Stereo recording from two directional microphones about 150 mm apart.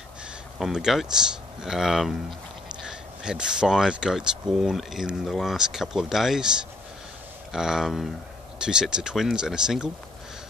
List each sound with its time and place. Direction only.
0.6 s speech: 5° right (ahead or behind)